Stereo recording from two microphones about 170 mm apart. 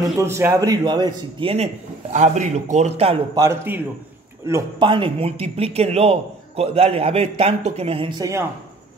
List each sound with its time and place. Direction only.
0.2 s a man's voice: 15° right (ahead or behind)
2.1 s a man's voice: 45° right (ahead or behind)
3.3 s a man's voice: 15° right (ahead or behind)
4.8 s a man's voice: 30° right (ahead or behind)
8.2 s a man's voice: 20° right (ahead or behind)